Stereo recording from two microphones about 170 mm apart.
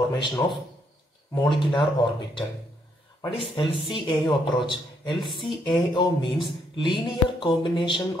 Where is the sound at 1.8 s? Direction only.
30° left (ahead or behind).